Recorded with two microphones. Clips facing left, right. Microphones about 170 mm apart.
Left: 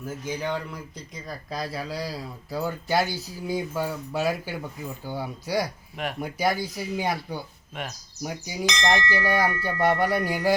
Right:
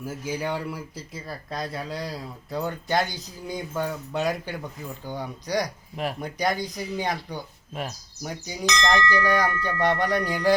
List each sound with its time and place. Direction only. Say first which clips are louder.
0.0 s speech: right 1 dB; 10° right (ahead or behind); by 7.4 s 10° left (ahead or behind)
7.7 s speech: right 3 dB; 35° right (ahead or behind)
8.2 s speech: left 1 dB; 10° left (ahead or behind)